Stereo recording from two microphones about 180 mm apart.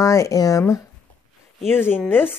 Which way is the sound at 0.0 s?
15° left (ahead or behind).